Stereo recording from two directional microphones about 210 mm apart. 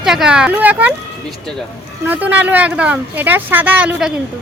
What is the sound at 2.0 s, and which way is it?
Speech, 10° right (ahead or behind).